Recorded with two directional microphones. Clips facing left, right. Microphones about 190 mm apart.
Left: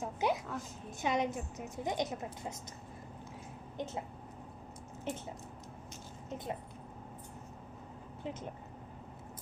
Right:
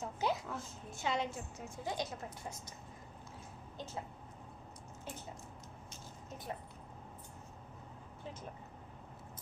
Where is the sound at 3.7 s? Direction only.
25° left (ahead or behind).